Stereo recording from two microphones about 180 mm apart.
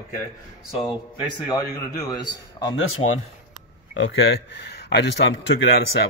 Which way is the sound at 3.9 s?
75° left (ahead or behind).